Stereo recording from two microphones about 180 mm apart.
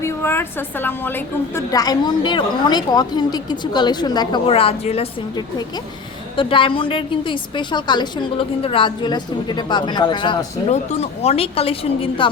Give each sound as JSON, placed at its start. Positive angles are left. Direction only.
{"t": 0.0, "sound": "a woman's voice", "side_deg": 15}
{"t": 6.3, "sound": "a woman's voice", "side_deg": 30}
{"t": 10.7, "sound": "a woman's voice", "side_deg": 35}